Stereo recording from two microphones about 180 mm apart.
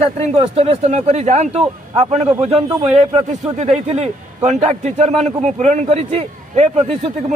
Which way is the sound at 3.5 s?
35° right (ahead or behind).